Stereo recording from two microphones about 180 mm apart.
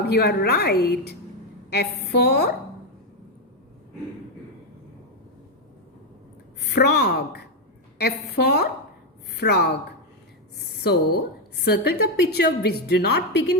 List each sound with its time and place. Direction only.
0.1 s a woman's voice: 65° left (ahead or behind)
6.7 s a woman's voice: 65° left (ahead or behind)
10.8 s a woman's voice: 65° left (ahead or behind)